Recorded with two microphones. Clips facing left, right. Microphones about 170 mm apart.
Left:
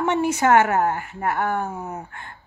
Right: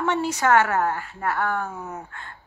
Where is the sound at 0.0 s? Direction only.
15° left (ahead or behind).